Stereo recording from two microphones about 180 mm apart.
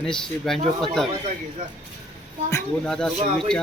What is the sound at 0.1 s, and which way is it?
Speech, 5° left (ahead or behind).